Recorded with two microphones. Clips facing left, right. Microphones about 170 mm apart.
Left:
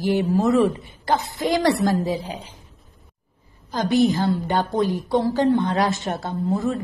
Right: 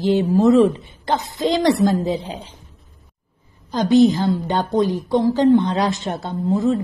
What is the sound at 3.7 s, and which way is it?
A woman's voice, 20° right (ahead or behind).